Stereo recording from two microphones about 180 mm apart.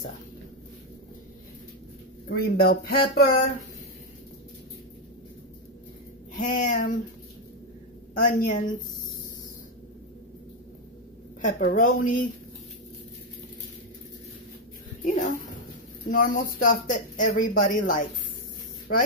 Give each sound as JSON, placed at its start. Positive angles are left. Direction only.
{"t": 2.2, "sound": "speech", "side_deg": 60}
{"t": 6.3, "sound": "speech", "side_deg": 45}
{"t": 8.2, "sound": "speech", "side_deg": 45}
{"t": 11.4, "sound": "speech", "side_deg": 50}
{"t": 15.0, "sound": "speech", "side_deg": 45}